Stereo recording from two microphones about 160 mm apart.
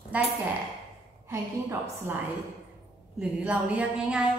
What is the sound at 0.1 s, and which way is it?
Speech, 10° right (ahead or behind).